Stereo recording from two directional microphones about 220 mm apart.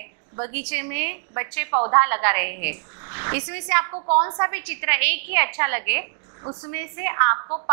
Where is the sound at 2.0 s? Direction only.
15° right (ahead or behind).